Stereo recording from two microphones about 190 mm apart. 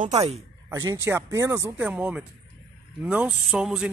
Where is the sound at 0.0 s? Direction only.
35° right (ahead or behind).